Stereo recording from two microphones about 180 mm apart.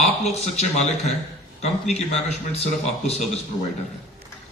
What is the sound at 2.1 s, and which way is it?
A man's voice, 35° left (ahead or behind).